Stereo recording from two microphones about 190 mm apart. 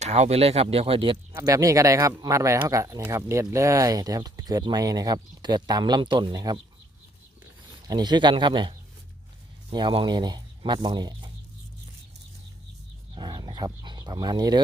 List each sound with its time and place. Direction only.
0.0 s speech: 35° right (ahead or behind); by 6.6 s 20° right (ahead or behind)
7.9 s speech: 20° right (ahead or behind)
13.1 s speech: 20° right (ahead or behind)